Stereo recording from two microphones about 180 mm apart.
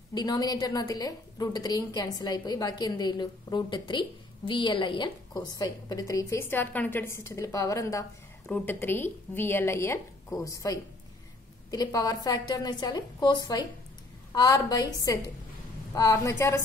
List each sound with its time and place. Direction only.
0.1 s a woman's voice: 25° left (ahead or behind)